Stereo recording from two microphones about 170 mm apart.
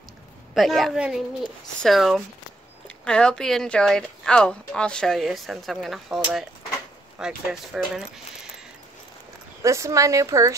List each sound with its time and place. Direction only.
0.6 s speech: centre (ahead or behind)
9.6 s speech: 20° right (ahead or behind)